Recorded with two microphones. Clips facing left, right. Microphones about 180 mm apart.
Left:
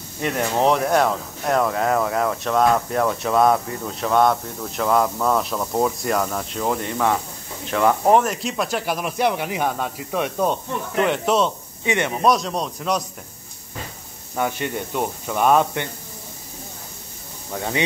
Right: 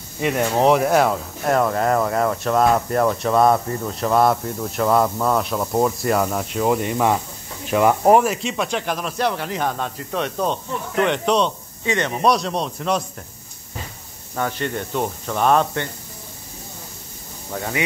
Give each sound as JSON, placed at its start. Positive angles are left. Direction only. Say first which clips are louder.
{"t": 0.2, "sound": "speech", "louder": "right 2 dB", "side_deg": -5}
{"t": 12.2, "sound": "speech", "louder": "right 1 dB", "side_deg": 0}
{"t": 14.3, "sound": "speech", "louder": "even", "side_deg": 10}